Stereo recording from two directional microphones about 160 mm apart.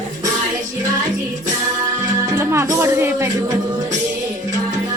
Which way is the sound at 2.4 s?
15° right (ahead or behind).